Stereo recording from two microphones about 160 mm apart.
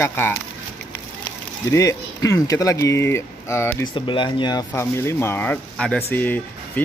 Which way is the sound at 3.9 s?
30° left (ahead or behind).